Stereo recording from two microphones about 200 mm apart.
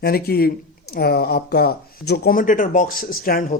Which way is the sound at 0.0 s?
50° left (ahead or behind).